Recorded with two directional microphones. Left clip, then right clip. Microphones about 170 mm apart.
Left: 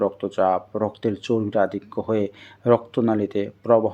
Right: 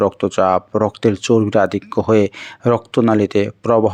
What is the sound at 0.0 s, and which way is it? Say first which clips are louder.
Speech: right 6 dB; 25° right (ahead or behind).